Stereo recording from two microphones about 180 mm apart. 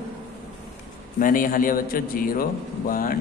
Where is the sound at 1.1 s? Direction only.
50° left (ahead or behind).